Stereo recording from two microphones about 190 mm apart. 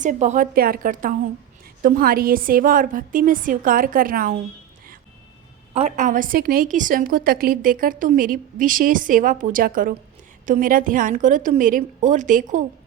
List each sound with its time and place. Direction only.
0.0 s a woman's voice: 40° right (ahead or behind)
0.5 s a woman's voice: 50° right (ahead or behind)
5.7 s a woman's voice: 40° right (ahead or behind)